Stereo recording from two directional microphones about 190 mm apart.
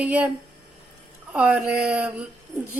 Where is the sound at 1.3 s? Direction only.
5° right (ahead or behind).